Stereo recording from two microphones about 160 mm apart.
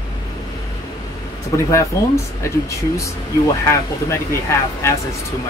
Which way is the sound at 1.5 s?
20° left (ahead or behind).